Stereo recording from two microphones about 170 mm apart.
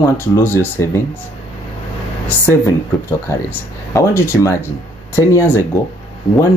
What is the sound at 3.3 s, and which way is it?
Speech, 20° left (ahead or behind).